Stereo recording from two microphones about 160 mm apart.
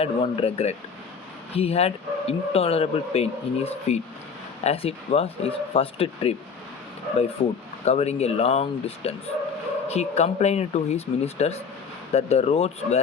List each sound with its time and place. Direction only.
0.0 s speech: 35° left (ahead or behind)
7.4 s speech: 35° left (ahead or behind)